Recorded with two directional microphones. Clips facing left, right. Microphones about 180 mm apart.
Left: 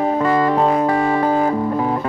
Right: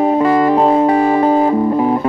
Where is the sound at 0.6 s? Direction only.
25° right (ahead or behind).